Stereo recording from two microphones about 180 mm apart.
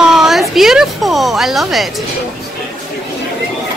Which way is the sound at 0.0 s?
Centre (ahead or behind).